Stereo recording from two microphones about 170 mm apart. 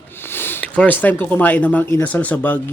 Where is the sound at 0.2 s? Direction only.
15° left (ahead or behind).